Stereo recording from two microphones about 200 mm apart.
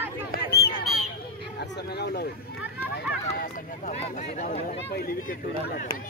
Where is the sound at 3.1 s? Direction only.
50° left (ahead or behind).